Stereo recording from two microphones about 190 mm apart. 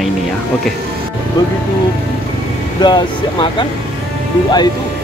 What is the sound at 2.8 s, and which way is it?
Speech, 25° left (ahead or behind).